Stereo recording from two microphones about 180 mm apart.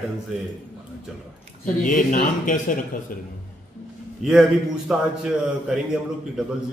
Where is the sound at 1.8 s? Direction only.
45° left (ahead or behind).